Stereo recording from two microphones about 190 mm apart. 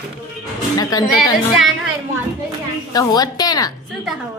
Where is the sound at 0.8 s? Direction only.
20° left (ahead or behind).